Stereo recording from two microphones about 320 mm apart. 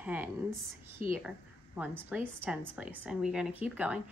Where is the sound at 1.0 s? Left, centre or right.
Right.